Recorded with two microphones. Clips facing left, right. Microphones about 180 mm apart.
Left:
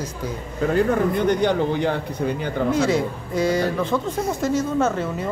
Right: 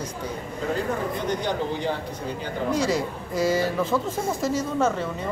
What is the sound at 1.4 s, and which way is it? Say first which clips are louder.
Speech: left 7 dB; 60° left (ahead or behind).